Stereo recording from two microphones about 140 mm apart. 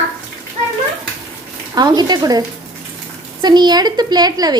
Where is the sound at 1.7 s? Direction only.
30° right (ahead or behind).